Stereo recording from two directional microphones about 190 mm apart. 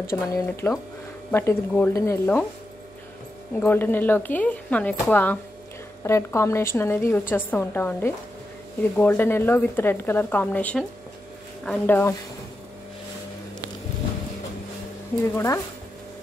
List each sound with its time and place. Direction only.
0.1 s a woman's voice: 15° left (ahead or behind)
3.5 s a woman's voice: 10° left (ahead or behind)
15.3 s a woman's voice: 15° left (ahead or behind)